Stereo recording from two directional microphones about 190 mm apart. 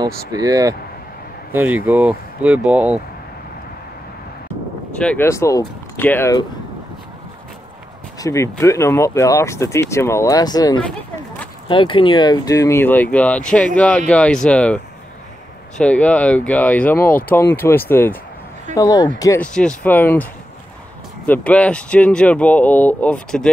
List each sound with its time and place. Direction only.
0.0 s speech: 20° right (ahead or behind)
5.0 s speech: 10° left (ahead or behind)
8.2 s speech: 15° left (ahead or behind)
15.8 s speech: 5° left (ahead or behind)
21.3 s speech: 5° left (ahead or behind)